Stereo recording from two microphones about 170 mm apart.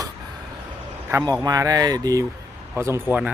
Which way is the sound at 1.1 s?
20° right (ahead or behind).